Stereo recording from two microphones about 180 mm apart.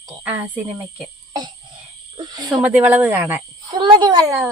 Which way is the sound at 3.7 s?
25° right (ahead or behind).